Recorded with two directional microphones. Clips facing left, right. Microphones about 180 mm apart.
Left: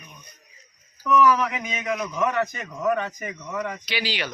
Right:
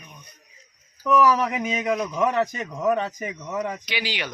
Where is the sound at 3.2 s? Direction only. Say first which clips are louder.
Right 2 dB; 20° right (ahead or behind).